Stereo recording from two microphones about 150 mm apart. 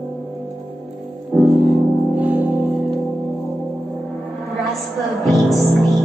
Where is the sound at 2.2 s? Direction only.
10° right (ahead or behind).